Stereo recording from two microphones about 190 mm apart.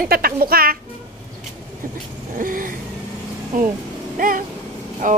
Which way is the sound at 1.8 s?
45° right (ahead or behind).